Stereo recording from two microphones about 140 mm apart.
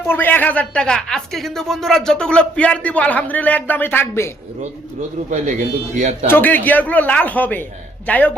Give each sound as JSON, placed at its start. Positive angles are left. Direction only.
{"t": 0.1, "sound": "speech", "side_deg": 15}
{"t": 5.3, "sound": "a man's voice", "side_deg": -60}
{"t": 6.2, "sound": "speech", "side_deg": 15}